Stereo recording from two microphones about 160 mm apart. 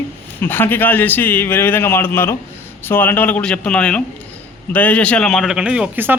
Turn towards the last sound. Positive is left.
turn(degrees=-10)  # may be behind; listen again after turning